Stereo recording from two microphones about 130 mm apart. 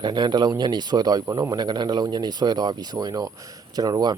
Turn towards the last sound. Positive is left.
turn(degrees=-30)  # may be behind; listen again after turning